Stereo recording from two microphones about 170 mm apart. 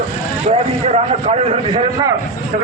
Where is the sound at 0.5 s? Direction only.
40° right (ahead or behind).